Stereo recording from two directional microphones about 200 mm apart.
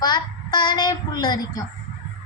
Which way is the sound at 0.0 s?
20° left (ahead or behind).